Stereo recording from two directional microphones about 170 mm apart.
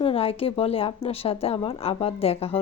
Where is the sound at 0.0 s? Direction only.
35° left (ahead or behind).